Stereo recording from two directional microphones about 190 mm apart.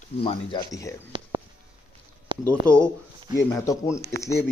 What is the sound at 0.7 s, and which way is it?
Speech, 15° left (ahead or behind).